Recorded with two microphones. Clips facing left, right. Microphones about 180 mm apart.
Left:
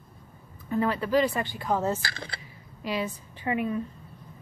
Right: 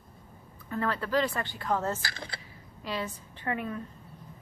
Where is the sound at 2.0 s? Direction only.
90° left.